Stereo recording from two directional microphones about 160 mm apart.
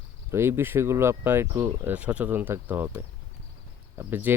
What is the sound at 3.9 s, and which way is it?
Speech, 10° right (ahead or behind).